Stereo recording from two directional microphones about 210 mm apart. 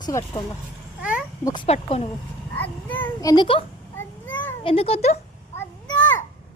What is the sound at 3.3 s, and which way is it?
A woman's voice, 25° left (ahead or behind).